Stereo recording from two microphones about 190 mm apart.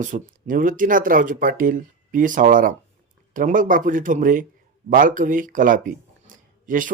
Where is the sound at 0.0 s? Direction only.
45° right (ahead or behind).